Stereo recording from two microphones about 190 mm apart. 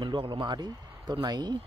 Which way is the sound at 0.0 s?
25° right (ahead or behind).